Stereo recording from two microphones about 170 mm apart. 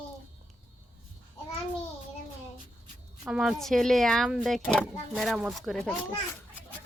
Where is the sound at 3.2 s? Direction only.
5° right (ahead or behind).